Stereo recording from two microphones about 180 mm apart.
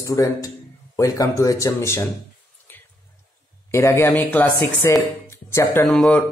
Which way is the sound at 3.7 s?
15° left (ahead or behind).